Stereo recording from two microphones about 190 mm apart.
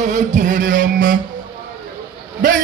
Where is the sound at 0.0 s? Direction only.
40° right (ahead or behind).